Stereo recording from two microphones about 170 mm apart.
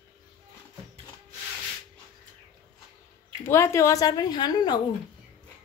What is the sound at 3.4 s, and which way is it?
A woman's voice, 15° left (ahead or behind).